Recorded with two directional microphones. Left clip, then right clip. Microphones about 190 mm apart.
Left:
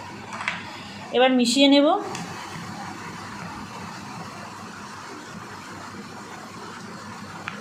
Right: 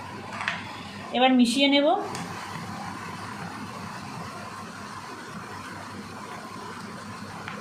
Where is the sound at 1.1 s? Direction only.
35° left (ahead or behind).